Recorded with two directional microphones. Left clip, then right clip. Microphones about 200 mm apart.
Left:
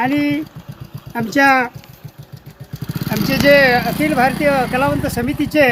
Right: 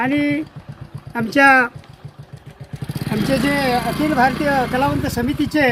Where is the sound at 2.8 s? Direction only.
45° left (ahead or behind).